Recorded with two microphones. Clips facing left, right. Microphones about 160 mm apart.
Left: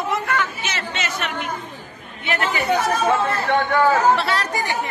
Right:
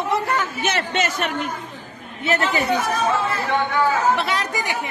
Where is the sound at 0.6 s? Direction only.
55° right (ahead or behind).